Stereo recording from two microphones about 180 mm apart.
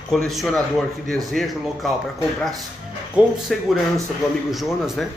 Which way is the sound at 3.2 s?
Centre (ahead or behind).